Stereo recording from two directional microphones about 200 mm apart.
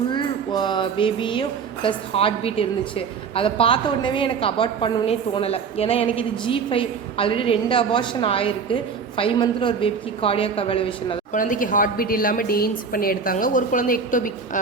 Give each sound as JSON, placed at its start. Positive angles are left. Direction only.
{"t": 0.1, "sound": "a woman's voice", "side_deg": 25}
{"t": 11.3, "sound": "a woman's voice", "side_deg": 40}